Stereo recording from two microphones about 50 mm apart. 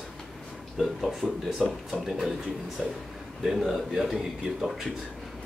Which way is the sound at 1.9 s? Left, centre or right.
Centre.